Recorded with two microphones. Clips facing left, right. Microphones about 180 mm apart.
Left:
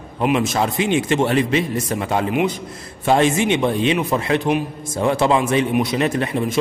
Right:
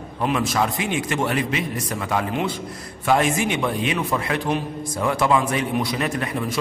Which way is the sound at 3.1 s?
25° left (ahead or behind).